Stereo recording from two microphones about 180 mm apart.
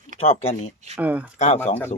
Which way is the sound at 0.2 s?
35° left (ahead or behind).